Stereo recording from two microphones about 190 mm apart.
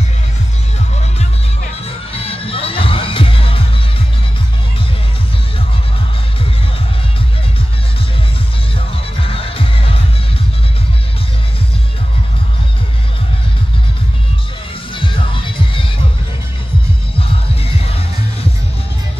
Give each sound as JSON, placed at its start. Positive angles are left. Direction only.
{"t": 1.9, "sound": "music", "side_deg": 30}
{"t": 8.9, "sound": "music", "side_deg": 30}
{"t": 15.0, "sound": "music", "side_deg": 25}